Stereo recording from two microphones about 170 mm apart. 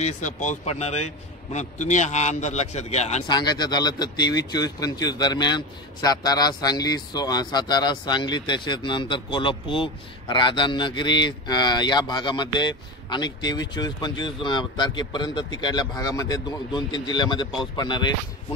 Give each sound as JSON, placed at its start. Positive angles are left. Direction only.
{"t": 0.0, "sound": "a man's voice", "side_deg": 45}
{"t": 3.3, "sound": "speech", "side_deg": 25}